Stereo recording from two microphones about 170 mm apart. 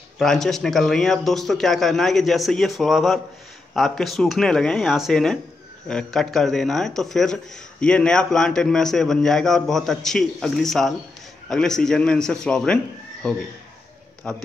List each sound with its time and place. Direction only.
0.2 s a man's voice: centre (ahead or behind)